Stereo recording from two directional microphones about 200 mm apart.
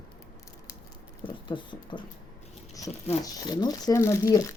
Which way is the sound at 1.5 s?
25° left (ahead or behind).